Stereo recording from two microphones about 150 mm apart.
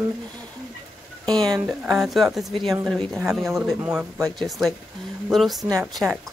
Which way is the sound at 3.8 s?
15° right (ahead or behind).